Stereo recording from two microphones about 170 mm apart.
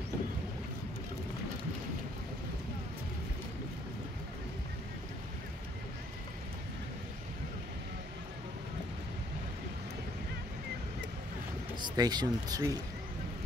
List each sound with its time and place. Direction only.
11.8 s speech: 25° right (ahead or behind)